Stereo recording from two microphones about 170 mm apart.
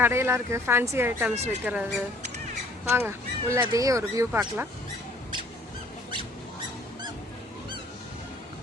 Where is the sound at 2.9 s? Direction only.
15° right (ahead or behind).